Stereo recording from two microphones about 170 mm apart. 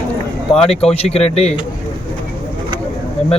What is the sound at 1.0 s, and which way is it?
Speech, 35° left (ahead or behind).